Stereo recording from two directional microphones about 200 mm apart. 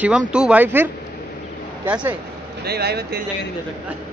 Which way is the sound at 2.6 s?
55° right (ahead or behind).